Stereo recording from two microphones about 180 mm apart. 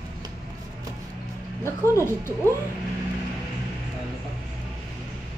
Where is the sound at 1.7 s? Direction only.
15° left (ahead or behind).